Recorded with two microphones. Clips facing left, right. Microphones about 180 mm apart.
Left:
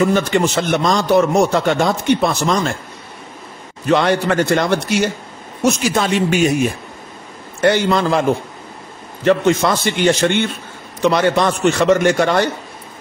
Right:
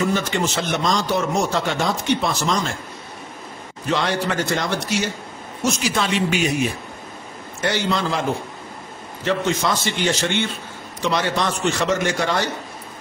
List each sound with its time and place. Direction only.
0.1 s speech: 60° left (ahead or behind)
3.9 s speech: 55° left (ahead or behind)
5.6 s a man's voice: 50° left (ahead or behind)
9.2 s speech: 60° left (ahead or behind)